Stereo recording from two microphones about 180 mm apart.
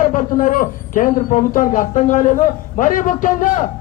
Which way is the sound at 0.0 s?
45° left (ahead or behind).